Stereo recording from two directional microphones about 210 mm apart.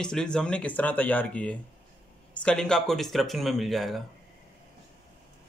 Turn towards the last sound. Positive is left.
turn(degrees=0)  # may be behind; listen again after turning